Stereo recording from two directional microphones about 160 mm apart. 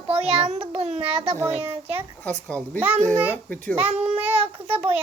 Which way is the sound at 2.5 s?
5° left (ahead or behind).